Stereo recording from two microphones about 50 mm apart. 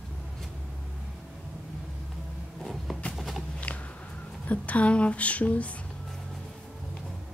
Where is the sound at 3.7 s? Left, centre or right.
Left.